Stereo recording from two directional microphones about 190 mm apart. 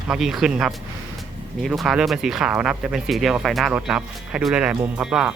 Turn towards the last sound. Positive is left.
turn(degrees=-5)  # may be behind; listen again after turning